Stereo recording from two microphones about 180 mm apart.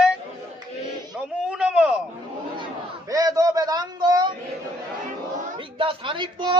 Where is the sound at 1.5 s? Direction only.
5° right (ahead or behind).